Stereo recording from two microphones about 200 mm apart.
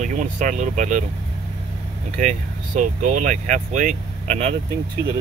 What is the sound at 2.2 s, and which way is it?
Speech, 40° right (ahead or behind).